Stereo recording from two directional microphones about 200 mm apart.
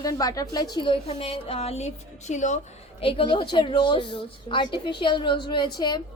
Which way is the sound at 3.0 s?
25° left (ahead or behind).